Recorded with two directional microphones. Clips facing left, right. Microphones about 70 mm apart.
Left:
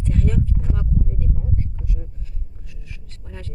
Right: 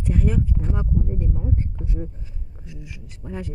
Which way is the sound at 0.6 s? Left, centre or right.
Right.